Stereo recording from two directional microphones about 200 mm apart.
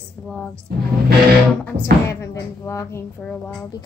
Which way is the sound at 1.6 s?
15° left (ahead or behind).